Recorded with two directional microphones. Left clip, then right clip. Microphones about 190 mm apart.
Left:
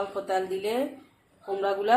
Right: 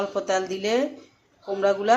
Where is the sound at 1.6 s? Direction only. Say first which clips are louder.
Right 5 dB; 15° right (ahead or behind).